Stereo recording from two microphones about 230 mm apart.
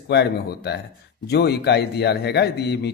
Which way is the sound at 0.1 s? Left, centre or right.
Left.